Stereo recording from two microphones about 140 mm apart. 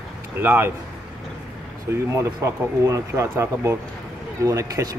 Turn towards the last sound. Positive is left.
turn(degrees=-25)  # may be behind; listen again after turning